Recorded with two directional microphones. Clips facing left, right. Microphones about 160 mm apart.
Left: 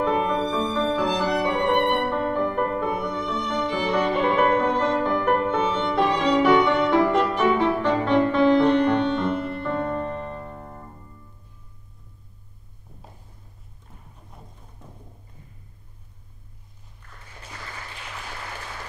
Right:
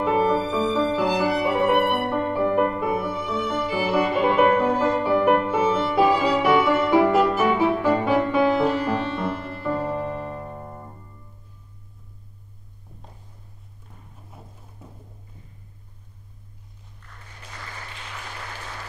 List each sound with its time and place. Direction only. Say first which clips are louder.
0.0 s music: right 2 dB; 5° right (ahead or behind)
14.8 s music: right 1 dB; 5° right (ahead or behind)